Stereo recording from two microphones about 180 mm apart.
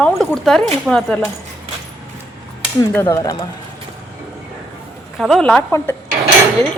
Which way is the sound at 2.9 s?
10° left (ahead or behind).